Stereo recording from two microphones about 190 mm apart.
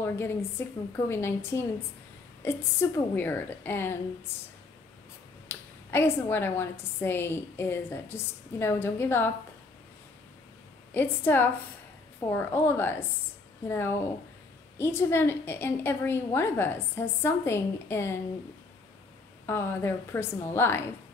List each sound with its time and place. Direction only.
0.0 s a woman's voice: 10° left (ahead or behind)
5.5 s a woman's voice: 10° left (ahead or behind)
10.9 s a woman's voice: 10° left (ahead or behind)
19.4 s a woman's voice: 10° left (ahead or behind)